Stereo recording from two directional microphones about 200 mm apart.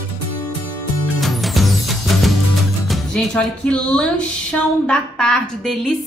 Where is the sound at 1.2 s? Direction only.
Centre (ahead or behind).